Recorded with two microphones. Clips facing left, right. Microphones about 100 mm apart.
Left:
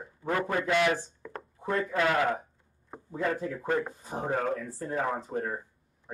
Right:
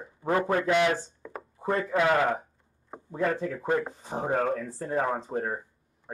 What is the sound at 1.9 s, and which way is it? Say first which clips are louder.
Speech: right 3 dB; 20° right (ahead or behind).